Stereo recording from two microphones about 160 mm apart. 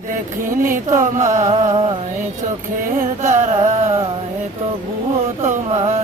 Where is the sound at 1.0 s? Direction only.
50° right (ahead or behind).